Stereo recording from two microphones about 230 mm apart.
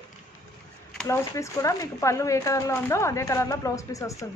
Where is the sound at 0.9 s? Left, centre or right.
Centre.